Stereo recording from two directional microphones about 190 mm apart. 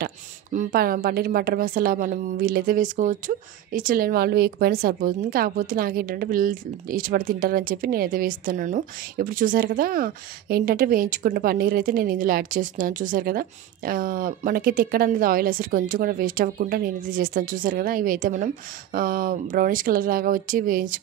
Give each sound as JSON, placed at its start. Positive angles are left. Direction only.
{"t": 0.0, "sound": "a woman's voice", "side_deg": -45}